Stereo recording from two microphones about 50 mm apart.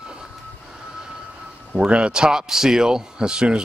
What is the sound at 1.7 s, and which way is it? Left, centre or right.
Speech, right.